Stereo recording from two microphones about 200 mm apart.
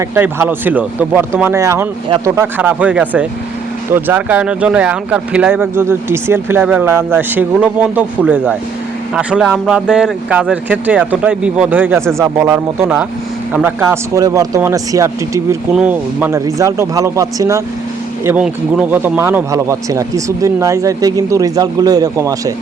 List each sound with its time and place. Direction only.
0.1 s speech: 10° right (ahead or behind)
18.3 s speech: 5° right (ahead or behind)